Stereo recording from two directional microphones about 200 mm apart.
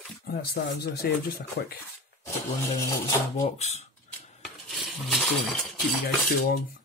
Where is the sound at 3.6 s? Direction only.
35° left (ahead or behind).